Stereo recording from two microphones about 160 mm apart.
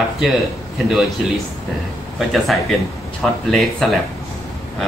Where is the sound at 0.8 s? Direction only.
Centre (ahead or behind).